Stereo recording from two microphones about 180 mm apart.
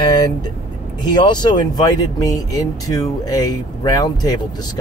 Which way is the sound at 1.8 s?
20° left (ahead or behind).